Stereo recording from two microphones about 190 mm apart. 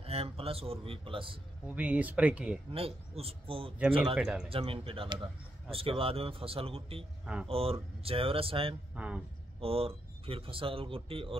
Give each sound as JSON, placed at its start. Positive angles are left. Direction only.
{"t": 0.0, "sound": "a man's voice", "side_deg": -30}
{"t": 1.7, "sound": "speech", "side_deg": -10}
{"t": 2.7, "sound": "a man's voice", "side_deg": -30}
{"t": 4.0, "sound": "speech", "side_deg": -5}
{"t": 4.5, "sound": "a man's voice", "side_deg": -30}
{"t": 8.9, "sound": "speech", "side_deg": -5}
{"t": 9.6, "sound": "a man's voice", "side_deg": -30}